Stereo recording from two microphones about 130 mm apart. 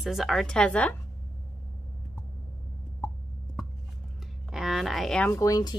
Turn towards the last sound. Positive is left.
turn(degrees=30)  # may be behind; listen again after turning